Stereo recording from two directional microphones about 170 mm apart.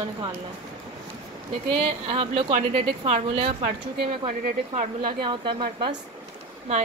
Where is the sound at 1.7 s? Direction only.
35° right (ahead or behind).